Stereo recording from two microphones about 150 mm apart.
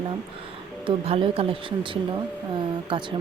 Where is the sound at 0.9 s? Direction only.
35° right (ahead or behind).